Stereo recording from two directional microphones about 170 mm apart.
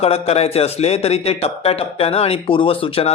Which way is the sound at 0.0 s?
35° left (ahead or behind).